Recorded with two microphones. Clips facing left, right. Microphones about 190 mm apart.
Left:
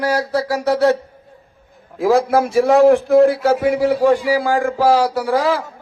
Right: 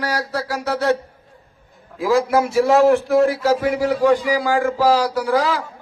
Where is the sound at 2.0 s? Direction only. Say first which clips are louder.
Left 2 dB; 55° left (ahead or behind).